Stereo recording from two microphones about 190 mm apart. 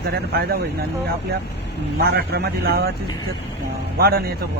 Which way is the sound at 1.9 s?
55° right (ahead or behind).